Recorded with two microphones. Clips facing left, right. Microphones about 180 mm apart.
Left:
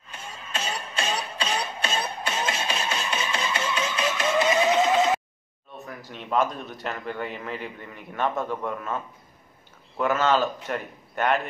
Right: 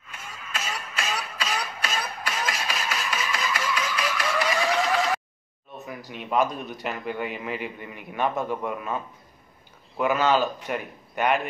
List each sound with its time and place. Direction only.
0.1 s music: 30° left (ahead or behind)
5.9 s a man's voice: 10° right (ahead or behind)